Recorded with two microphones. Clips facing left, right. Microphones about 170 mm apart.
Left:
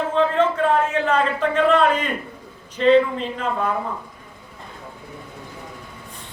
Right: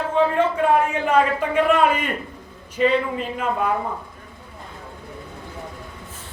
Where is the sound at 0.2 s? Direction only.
10° right (ahead or behind).